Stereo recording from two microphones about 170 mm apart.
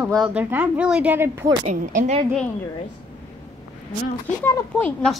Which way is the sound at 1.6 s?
45° right (ahead or behind).